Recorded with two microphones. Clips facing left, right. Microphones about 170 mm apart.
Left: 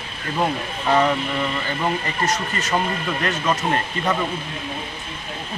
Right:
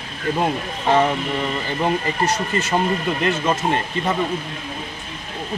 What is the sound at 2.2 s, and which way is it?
Speech, 30° right (ahead or behind).